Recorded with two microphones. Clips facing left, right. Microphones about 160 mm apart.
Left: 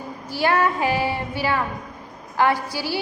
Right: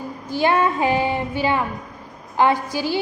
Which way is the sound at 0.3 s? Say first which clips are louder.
Right 2 dB; 20° right (ahead or behind).